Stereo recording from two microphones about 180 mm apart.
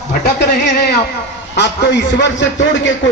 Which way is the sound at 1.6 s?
70° left (ahead or behind).